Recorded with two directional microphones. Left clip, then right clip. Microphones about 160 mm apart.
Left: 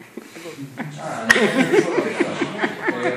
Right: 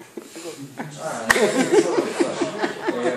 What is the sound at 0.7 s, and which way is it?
Speech, 15° right (ahead or behind).